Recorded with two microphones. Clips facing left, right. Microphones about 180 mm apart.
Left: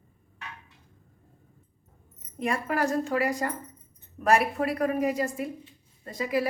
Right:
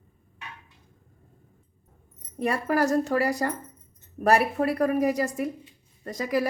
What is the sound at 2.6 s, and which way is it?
Speech, 40° right (ahead or behind).